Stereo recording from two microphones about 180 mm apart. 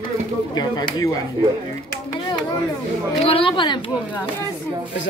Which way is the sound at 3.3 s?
30° left (ahead or behind).